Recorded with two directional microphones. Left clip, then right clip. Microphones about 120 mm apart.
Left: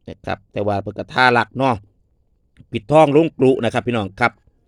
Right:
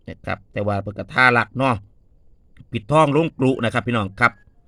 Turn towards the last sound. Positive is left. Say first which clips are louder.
# even
turn(degrees=35)  # may be behind; listen again after turning